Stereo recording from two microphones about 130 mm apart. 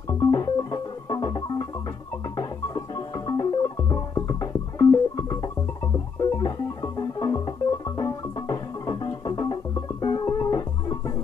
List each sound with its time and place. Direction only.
0.2 s music: 30° left (ahead or behind)
3.3 s music: 30° left (ahead or behind)
7.0 s music: 30° left (ahead or behind)